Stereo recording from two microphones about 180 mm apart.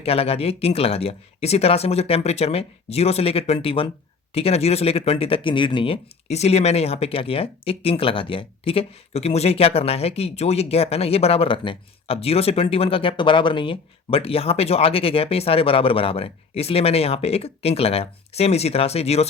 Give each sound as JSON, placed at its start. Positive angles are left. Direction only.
{"t": 0.0, "sound": "speech", "side_deg": 35}